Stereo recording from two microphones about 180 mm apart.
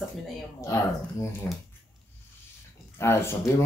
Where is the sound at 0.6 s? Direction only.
15° left (ahead or behind).